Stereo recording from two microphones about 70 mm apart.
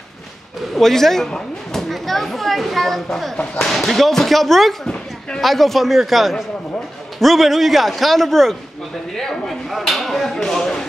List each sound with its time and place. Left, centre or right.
0.7 s speech: centre